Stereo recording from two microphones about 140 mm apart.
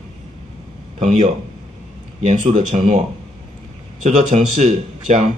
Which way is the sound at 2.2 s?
50° right (ahead or behind).